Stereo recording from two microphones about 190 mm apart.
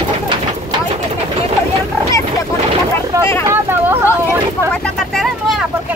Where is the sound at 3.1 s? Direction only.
15° right (ahead or behind).